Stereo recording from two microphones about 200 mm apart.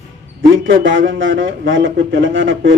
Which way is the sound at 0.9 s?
70° right (ahead or behind).